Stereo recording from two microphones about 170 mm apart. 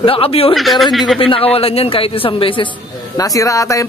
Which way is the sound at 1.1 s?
35° left (ahead or behind).